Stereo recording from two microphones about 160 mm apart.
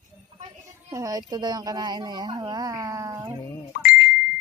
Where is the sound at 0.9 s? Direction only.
20° right (ahead or behind).